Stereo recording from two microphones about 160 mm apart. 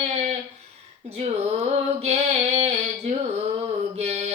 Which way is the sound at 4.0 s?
40° right (ahead or behind).